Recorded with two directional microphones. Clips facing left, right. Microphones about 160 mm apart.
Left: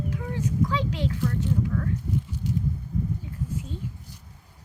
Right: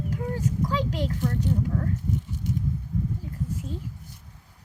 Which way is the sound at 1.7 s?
30° right (ahead or behind).